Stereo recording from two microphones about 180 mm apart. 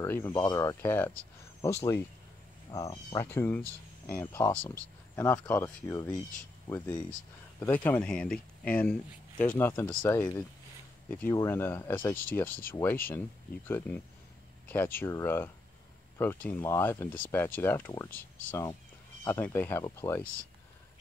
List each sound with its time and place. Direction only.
0.0 s a sound: 10° left (ahead or behind)
0.3 s speech: 20° left (ahead or behind)
2.7 s speech: 15° left (ahead or behind)
7.6 s speech: 10° left (ahead or behind)